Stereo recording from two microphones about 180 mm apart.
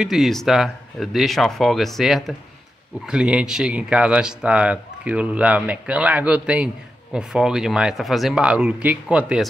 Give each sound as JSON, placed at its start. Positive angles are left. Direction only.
{"t": 0.0, "sound": "speech", "side_deg": 0}